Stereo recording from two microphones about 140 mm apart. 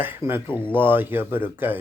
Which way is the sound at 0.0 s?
15° right (ahead or behind).